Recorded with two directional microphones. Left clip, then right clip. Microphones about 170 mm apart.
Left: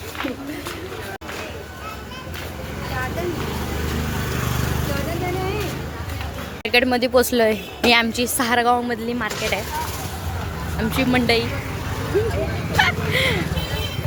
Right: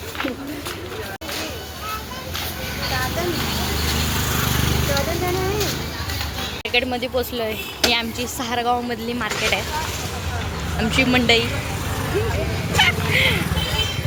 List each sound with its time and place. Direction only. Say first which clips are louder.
6.7 s speech: left 4 dB; 45° left (ahead or behind); by 9.6 s 15° left (ahead or behind)
10.8 s speech: right 2 dB; 10° left (ahead or behind)
12.7 s vehicle: right 1 dB; 30° left (ahead or behind)